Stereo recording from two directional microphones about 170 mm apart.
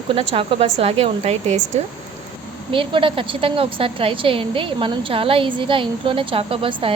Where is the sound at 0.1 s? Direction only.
35° right (ahead or behind).